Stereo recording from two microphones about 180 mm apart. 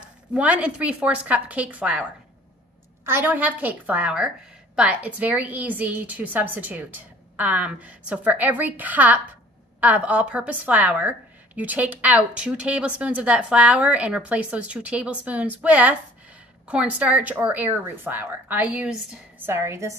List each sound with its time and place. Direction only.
0.3 s a woman's voice: 5° right (ahead or behind)
3.1 s a woman's voice: 10° right (ahead or behind)